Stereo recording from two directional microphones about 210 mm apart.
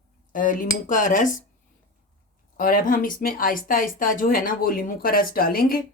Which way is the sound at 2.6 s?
40° left (ahead or behind).